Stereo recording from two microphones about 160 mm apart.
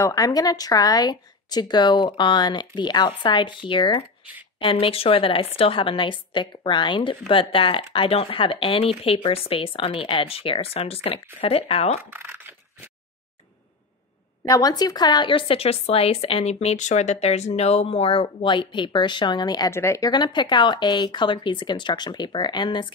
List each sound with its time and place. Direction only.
0.0 s a woman's voice: 20° left (ahead or behind); by 12.0 s 40° left (ahead or behind)
12.0 s a sound: 15° right (ahead or behind)
14.5 s a woman's voice: 25° left (ahead or behind)